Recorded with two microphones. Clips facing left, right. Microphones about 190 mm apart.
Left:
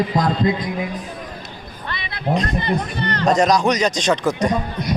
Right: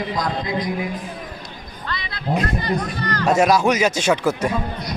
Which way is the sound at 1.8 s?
20° left (ahead or behind).